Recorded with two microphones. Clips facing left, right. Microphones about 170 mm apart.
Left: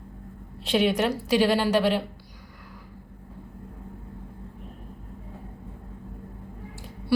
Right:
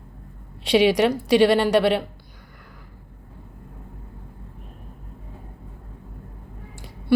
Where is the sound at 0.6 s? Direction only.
80° right.